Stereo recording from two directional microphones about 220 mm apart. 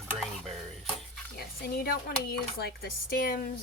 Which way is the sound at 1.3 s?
45° left (ahead or behind).